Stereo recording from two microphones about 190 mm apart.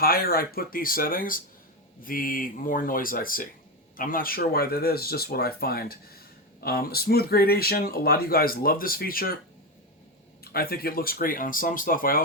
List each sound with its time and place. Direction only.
0.0 s speech: 50° left (ahead or behind)
10.4 s speech: 55° left (ahead or behind)